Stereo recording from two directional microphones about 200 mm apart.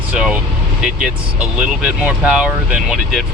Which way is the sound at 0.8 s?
5° right (ahead or behind).